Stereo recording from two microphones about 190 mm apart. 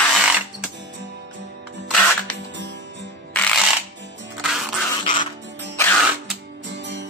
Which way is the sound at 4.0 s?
70° right (ahead or behind).